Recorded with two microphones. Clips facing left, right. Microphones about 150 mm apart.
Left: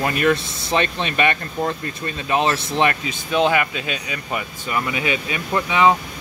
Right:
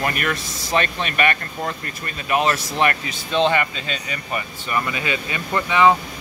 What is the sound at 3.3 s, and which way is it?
Speech, 10° left (ahead or behind).